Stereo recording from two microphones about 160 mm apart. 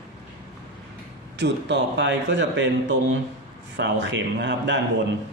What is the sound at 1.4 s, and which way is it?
A man's voice, 90° right.